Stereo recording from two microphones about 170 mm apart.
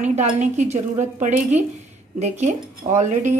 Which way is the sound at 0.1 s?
45° right (ahead or behind).